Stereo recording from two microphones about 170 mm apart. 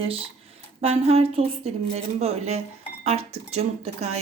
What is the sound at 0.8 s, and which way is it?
Speech, 35° right (ahead or behind).